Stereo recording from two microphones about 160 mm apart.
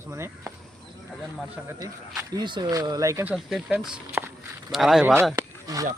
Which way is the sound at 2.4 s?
30° right (ahead or behind).